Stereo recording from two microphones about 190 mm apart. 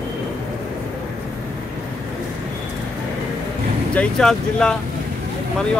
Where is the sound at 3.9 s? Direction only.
5° left (ahead or behind).